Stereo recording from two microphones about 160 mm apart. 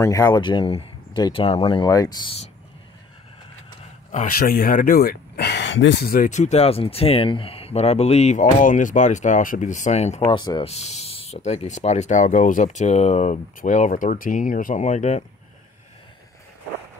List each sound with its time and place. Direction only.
0.0 s speech: 20° left (ahead or behind)
4.1 s speech: 60° left (ahead or behind)
6.3 s speech: 45° left (ahead or behind)
10.2 s speech: 30° left (ahead or behind)
10.7 s speech: 40° left (ahead or behind)